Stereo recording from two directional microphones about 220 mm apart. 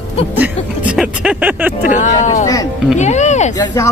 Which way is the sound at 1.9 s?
35° left (ahead or behind).